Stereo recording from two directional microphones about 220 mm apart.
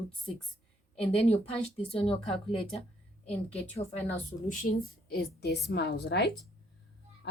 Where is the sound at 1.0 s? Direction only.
25° left (ahead or behind).